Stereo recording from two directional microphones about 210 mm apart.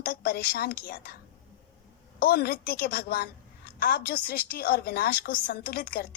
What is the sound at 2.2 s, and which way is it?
A woman's voice, 45° left (ahead or behind).